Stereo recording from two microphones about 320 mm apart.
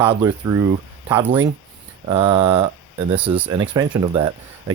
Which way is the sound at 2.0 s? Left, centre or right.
Centre.